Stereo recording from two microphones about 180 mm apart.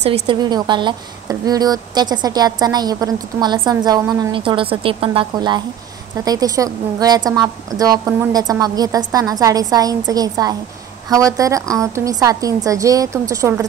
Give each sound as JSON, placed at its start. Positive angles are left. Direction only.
{"t": 0.0, "sound": "a woman's voice", "side_deg": -35}
{"t": 0.4, "sound": "a woman's voice", "side_deg": -25}